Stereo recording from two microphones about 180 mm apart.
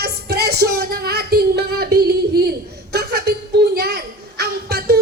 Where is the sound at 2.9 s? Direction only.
60° right (ahead or behind).